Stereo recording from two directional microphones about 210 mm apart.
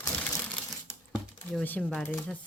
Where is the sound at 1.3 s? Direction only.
5° left (ahead or behind).